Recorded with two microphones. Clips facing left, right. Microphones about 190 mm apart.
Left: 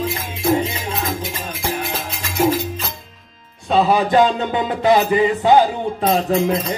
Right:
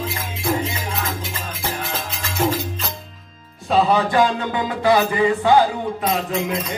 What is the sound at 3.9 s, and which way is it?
Music, 20° left (ahead or behind).